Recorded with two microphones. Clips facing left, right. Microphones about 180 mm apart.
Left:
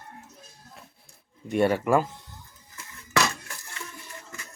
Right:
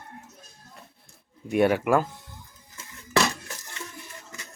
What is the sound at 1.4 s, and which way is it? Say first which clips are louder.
Speech: right 1 dB; 5° right (ahead or behind).